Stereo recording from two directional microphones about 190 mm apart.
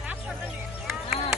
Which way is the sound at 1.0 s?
35° left (ahead or behind).